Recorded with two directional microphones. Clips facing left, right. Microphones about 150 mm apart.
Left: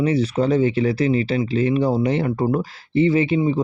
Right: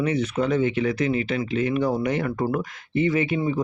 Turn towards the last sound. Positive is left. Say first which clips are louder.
# left 5 dB
turn(degrees=25)  # may be behind; listen again after turning